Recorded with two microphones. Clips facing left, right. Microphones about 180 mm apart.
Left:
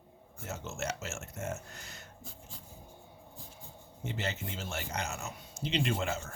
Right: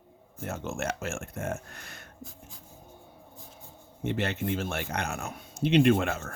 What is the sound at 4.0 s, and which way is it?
Speech, 60° right (ahead or behind).